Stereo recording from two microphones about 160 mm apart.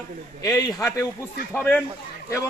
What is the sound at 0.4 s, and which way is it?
A man's voice, 20° left (ahead or behind).